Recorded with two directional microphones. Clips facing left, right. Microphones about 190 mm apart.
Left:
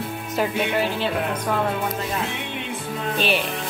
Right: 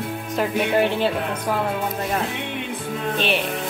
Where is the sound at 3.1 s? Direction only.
Centre (ahead or behind).